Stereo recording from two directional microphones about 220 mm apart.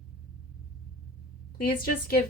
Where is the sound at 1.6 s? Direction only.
40° left (ahead or behind).